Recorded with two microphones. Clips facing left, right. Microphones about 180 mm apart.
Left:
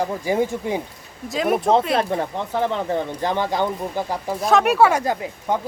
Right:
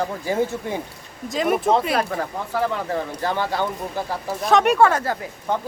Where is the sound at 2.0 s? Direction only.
25° left (ahead or behind).